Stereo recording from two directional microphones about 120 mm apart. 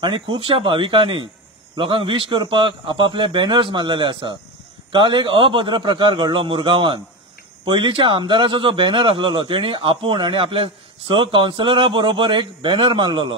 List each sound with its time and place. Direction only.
0.0 s speech: 45° right (ahead or behind)